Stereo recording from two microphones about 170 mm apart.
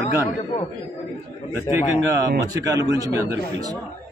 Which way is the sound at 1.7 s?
20° right (ahead or behind).